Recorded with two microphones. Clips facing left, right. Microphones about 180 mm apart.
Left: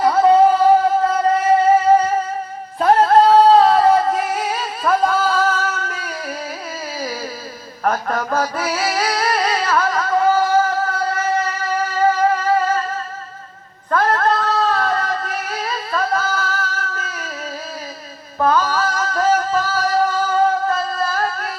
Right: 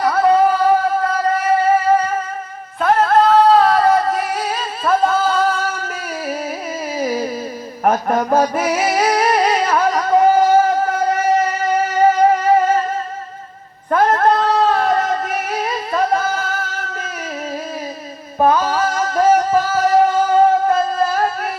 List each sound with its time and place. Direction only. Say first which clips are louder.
0.0 s music: left 1 dB; 25° left (ahead or behind)
1.0 s singing: left 1 dB; 25° left (ahead or behind)
2.8 s music: left 1 dB; 30° left (ahead or behind)
4.8 s a sound: right 1 dB; centre (ahead or behind)
5.5 s singing: right 1 dB; 10° right (ahead or behind)
6.9 s a sound: right 8 dB; 20° right (ahead or behind)
7.9 s mantra: right 4 dB; 20° right (ahead or behind)
12.1 s music: right 4 dB; 20° right (ahead or behind)
13.9 s a sound: right 3 dB; 20° right (ahead or behind)
18.3 s music: right 2 dB; 20° right (ahead or behind)